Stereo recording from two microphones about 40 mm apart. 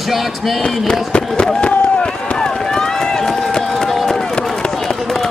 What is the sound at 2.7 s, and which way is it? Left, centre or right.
Run, centre.